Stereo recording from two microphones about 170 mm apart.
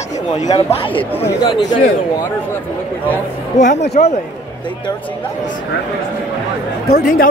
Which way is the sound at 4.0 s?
50° left (ahead or behind).